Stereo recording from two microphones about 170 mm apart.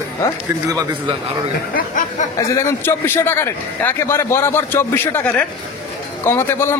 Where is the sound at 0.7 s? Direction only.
20° right (ahead or behind).